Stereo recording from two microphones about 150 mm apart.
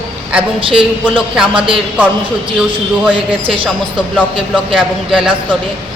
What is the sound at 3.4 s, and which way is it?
Speech, 35° right (ahead or behind).